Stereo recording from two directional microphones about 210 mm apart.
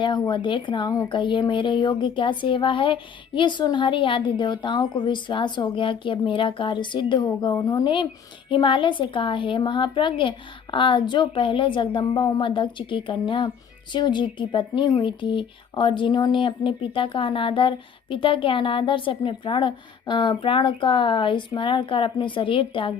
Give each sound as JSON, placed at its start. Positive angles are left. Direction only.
{"t": 0.0, "sound": "speech", "side_deg": 20}